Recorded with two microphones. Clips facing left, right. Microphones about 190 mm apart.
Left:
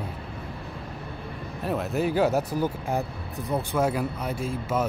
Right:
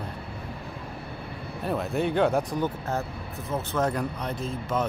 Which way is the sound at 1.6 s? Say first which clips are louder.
Left 1 dB; centre (ahead or behind).